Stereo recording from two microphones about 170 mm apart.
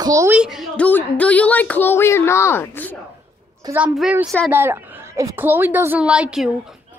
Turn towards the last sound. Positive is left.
turn(degrees=-5)  # may be behind; listen again after turning